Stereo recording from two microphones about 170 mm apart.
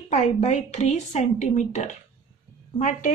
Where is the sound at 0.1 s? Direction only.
45° left (ahead or behind).